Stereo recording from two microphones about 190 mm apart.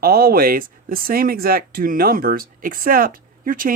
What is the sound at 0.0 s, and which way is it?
A man's voice, 50° right (ahead or behind).